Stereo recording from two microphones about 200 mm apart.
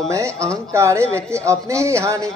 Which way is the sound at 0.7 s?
15° right (ahead or behind).